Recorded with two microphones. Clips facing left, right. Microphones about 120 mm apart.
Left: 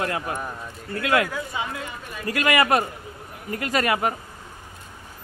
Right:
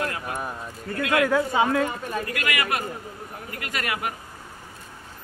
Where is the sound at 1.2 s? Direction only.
55° right (ahead or behind).